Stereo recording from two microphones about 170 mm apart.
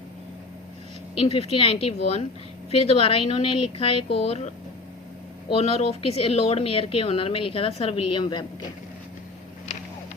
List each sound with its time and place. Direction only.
1.1 s speech: 35° left (ahead or behind)